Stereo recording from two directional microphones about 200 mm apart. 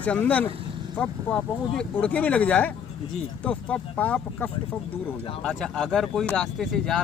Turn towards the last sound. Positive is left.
turn(degrees=0)  # may be behind; listen again after turning